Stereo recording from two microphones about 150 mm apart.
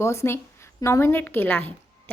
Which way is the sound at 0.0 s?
20° left (ahead or behind).